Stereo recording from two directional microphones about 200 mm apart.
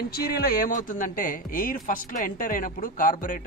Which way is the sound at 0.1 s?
50° left (ahead or behind).